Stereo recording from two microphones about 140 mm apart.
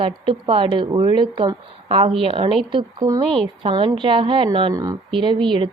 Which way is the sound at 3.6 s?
40° right (ahead or behind).